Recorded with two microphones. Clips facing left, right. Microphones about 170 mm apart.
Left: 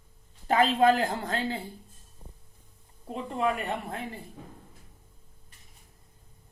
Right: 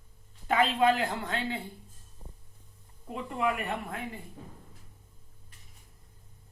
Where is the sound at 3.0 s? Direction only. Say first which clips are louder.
Left 2 dB; 30° left (ahead or behind).